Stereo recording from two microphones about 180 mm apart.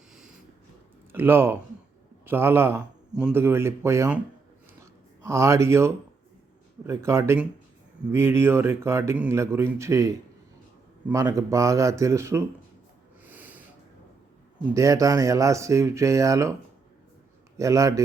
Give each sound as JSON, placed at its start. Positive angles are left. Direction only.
{"t": 0.1, "sound": "a sound", "side_deg": -5}
{"t": 1.1, "sound": "speech", "side_deg": -10}
{"t": 5.2, "sound": "speech", "side_deg": -15}
{"t": 13.2, "sound": "snort", "side_deg": -10}
{"t": 14.7, "sound": "speech", "side_deg": -20}
{"t": 17.6, "sound": "speech", "side_deg": -15}